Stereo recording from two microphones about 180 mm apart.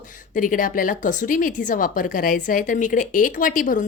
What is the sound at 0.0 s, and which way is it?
A woman's voice, 45° left (ahead or behind).